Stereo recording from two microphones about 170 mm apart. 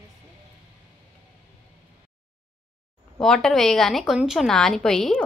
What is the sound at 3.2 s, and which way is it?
A woman's voice, 5° left (ahead or behind).